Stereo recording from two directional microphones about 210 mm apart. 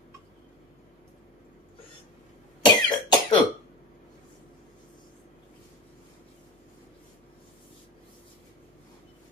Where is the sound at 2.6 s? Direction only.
20° left (ahead or behind).